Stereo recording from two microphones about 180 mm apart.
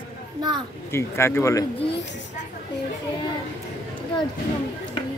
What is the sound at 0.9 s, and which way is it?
Speech, 15° left (ahead or behind).